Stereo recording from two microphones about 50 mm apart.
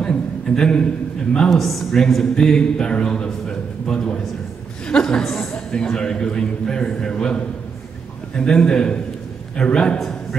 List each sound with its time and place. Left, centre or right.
0.0 s a man's voice: centre
1.6 s a man's voice: centre
3.4 s a sound: centre
4.8 s a man's voice: centre
5.7 s a man's voice: centre